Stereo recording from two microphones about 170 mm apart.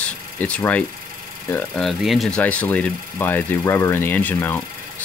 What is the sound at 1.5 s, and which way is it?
Speech, 5° left (ahead or behind).